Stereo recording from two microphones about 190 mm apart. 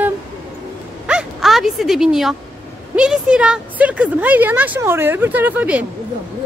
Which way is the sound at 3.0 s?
5° right (ahead or behind).